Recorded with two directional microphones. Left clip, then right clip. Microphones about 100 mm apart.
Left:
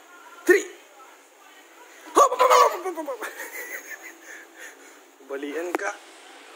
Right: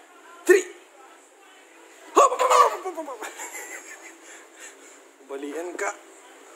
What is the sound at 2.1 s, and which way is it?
Dog, 25° left (ahead or behind).